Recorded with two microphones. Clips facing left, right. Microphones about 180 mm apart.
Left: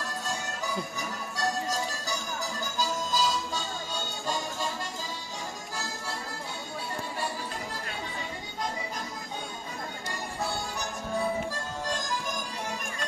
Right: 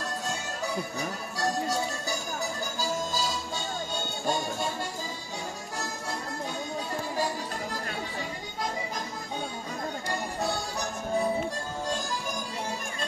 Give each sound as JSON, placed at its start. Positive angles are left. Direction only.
{"t": 1.4, "sound": "music", "side_deg": -60}